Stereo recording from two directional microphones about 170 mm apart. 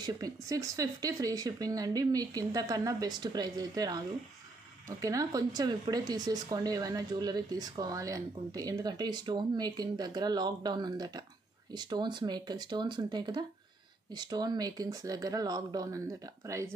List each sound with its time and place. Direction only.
0.0 s speech: 20° right (ahead or behind)
5.0 s speech: 20° right (ahead or behind)